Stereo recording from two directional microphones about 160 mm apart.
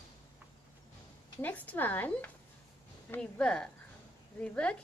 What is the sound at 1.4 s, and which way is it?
A woman's voice, 10° left (ahead or behind).